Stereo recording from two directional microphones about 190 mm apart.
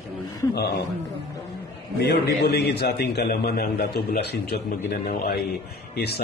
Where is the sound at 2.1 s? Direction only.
60° left (ahead or behind).